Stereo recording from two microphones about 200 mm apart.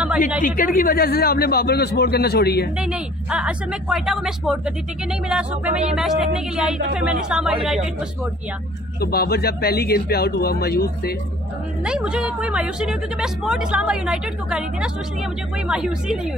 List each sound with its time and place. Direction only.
0.4 s a man's voice: 45° left (ahead or behind)
2.8 s speech: 5° right (ahead or behind)
9.0 s a man's voice: 50° left (ahead or behind)
11.8 s speech: 5° right (ahead or behind)